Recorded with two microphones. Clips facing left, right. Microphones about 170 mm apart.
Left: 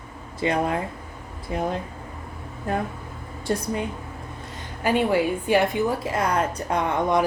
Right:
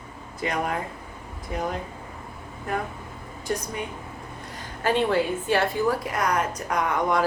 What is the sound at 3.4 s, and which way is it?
Speech, 30° left (ahead or behind).